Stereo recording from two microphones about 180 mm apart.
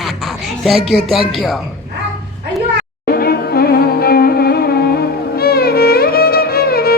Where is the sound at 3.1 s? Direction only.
55° left (ahead or behind).